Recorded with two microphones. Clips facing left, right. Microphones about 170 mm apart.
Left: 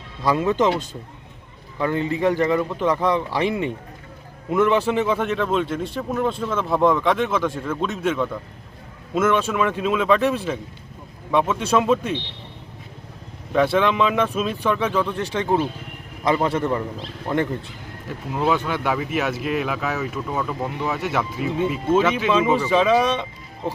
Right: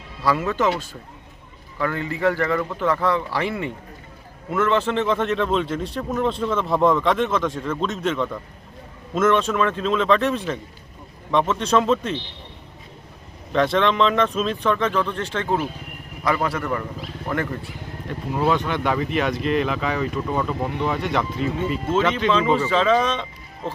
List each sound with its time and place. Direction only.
0.2 s speech: 15° left (ahead or behind)
1.8 s speech: 20° left (ahead or behind)
13.5 s speech: 5° left (ahead or behind)
16.2 s speech: 25° left (ahead or behind)
18.1 s speech: 5° left (ahead or behind)